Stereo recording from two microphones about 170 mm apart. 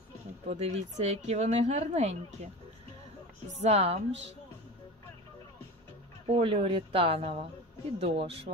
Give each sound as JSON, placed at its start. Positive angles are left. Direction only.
{"t": 0.5, "sound": "speech", "side_deg": -40}
{"t": 3.6, "sound": "speech", "side_deg": -40}
{"t": 6.2, "sound": "speech", "side_deg": -35}